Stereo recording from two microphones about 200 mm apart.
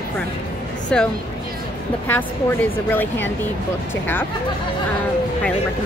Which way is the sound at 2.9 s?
10° left (ahead or behind).